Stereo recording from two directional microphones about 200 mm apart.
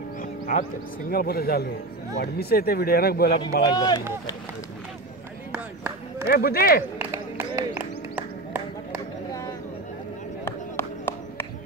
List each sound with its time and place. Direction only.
0.2 s music: 40° left (ahead or behind)
1.1 s speech: 50° left (ahead or behind)
3.6 s speech: 20° left (ahead or behind)
5.5 s speech: 10° right (ahead or behind)
6.2 s speech: 50° left (ahead or behind)
7.0 s a sound: 10° right (ahead or behind)
10.4 s a sound: 10° left (ahead or behind)